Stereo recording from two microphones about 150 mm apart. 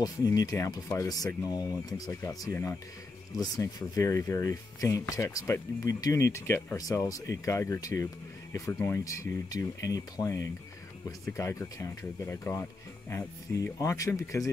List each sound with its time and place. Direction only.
0.0 s speech: 25° left (ahead or behind)